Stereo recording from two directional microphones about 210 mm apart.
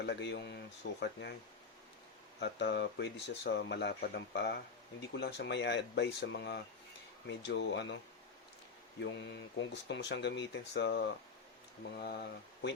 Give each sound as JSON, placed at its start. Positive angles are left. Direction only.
{"t": 0.0, "sound": "speech", "side_deg": 55}
{"t": 2.4, "sound": "speech", "side_deg": 55}
{"t": 9.0, "sound": "speech", "side_deg": 60}